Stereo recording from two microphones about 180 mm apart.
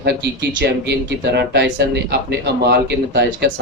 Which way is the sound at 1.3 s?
70° right (ahead or behind).